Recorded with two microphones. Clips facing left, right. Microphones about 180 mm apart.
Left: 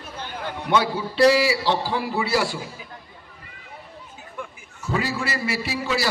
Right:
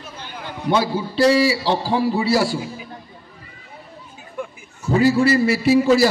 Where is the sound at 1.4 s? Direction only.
35° right (ahead or behind).